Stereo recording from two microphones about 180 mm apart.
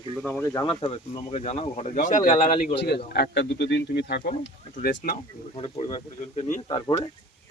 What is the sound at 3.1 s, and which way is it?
Speech, 65° left (ahead or behind).